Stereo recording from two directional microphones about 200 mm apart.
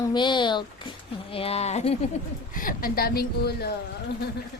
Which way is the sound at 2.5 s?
45° left (ahead or behind).